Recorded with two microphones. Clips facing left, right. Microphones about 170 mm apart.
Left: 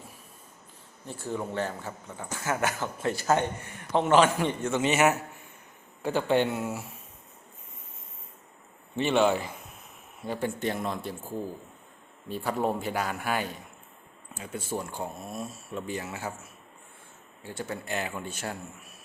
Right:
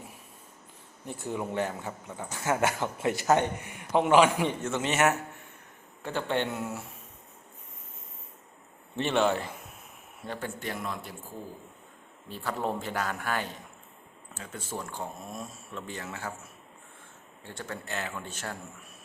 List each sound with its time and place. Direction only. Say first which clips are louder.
1.0 s a man's voice: even; 20° right (ahead or behind); by 6.8 s 5° left (ahead or behind)
9.0 s a man's voice: left 2 dB; centre (ahead or behind)
10.6 s speech: left 5 dB; 25° left (ahead or behind)
12.3 s speech: left 3 dB; 15° left (ahead or behind)